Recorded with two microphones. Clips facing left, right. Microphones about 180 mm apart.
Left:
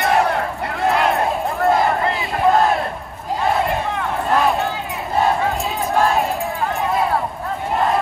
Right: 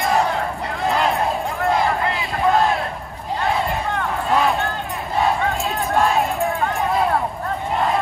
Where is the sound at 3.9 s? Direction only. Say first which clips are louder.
Right 1 dB; centre (ahead or behind).